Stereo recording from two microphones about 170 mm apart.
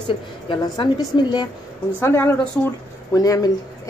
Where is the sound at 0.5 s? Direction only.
25° left (ahead or behind).